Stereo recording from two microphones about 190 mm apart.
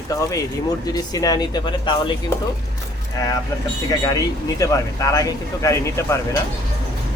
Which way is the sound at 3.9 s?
20° left (ahead or behind).